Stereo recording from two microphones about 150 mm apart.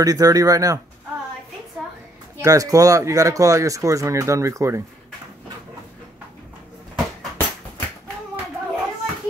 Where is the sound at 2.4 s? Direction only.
20° right (ahead or behind).